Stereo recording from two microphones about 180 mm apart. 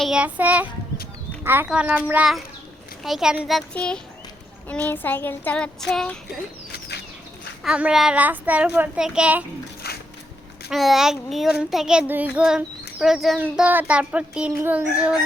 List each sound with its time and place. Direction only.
0.0 s a child's voice: 5° right (ahead or behind)
4.7 s child singing: 10° left (ahead or behind)
6.7 s a sound: 65° left (ahead or behind)
7.6 s a child's voice: 5° right (ahead or behind)
10.7 s a child's voice: centre (ahead or behind)